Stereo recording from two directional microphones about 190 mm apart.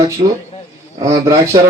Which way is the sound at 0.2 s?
30° right (ahead or behind).